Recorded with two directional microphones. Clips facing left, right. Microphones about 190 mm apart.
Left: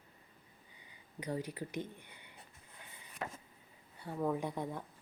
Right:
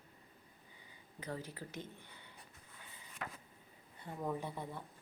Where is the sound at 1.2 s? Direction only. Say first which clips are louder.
Left 5 dB; 15° left (ahead or behind).